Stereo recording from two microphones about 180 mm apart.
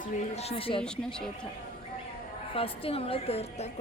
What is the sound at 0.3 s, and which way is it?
Speech, 35° left (ahead or behind).